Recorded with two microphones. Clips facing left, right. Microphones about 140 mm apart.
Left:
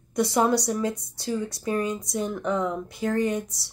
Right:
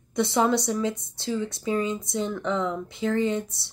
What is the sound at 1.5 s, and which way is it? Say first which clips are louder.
Speech: even; 20° right (ahead or behind).